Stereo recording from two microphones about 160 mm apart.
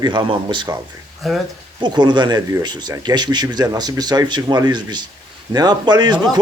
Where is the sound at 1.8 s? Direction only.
25° right (ahead or behind).